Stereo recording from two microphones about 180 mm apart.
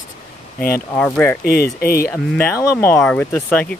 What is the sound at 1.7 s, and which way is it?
Speech, 55° left (ahead or behind).